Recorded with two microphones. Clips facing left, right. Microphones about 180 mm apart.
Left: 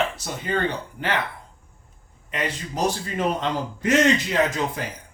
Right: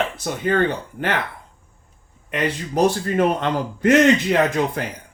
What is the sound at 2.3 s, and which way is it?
A man's voice, 55° right (ahead or behind).